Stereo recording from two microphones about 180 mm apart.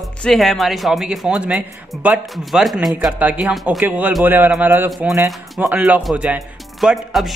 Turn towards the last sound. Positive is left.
turn(degrees=0)  # may be behind; listen again after turning